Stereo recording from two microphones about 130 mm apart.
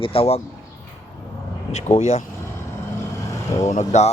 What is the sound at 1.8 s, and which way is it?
Speech, 60° left (ahead or behind).